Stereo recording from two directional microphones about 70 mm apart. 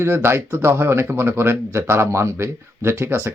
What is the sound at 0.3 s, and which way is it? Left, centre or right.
Speech, right.